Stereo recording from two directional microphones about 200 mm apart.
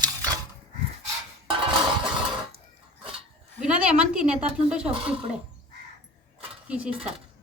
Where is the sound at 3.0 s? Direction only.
25° right (ahead or behind).